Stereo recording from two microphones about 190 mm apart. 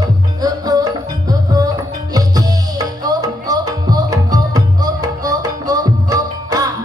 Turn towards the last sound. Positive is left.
turn(degrees=-20)  # may be behind; listen again after turning